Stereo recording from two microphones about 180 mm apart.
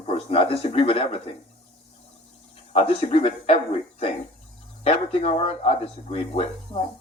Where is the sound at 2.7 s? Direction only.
30° left (ahead or behind).